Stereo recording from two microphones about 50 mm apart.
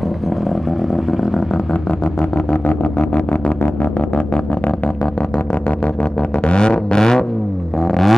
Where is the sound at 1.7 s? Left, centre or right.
Left; by 7.3 s centre.